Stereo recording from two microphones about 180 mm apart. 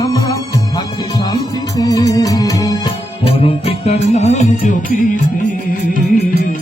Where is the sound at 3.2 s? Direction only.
35° left (ahead or behind).